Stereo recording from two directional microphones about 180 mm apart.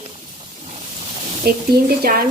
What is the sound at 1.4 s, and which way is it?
Speech, 55° right (ahead or behind).